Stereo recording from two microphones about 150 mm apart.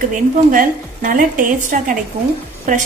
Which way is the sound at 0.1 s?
60° right (ahead or behind).